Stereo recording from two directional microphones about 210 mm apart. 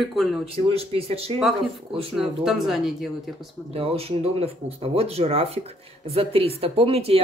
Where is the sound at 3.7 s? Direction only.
25° right (ahead or behind).